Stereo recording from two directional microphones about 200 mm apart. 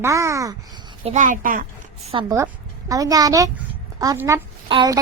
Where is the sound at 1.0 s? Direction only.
40° right (ahead or behind).